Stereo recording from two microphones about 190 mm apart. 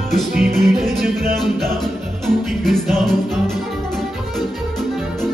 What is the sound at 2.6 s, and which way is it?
Music, centre (ahead or behind).